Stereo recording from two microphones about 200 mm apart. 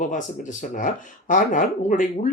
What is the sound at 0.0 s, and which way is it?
Speech, 40° left (ahead or behind).